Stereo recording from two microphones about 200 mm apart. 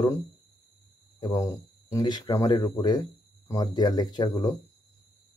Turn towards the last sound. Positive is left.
turn(degrees=20)  # may be behind; listen again after turning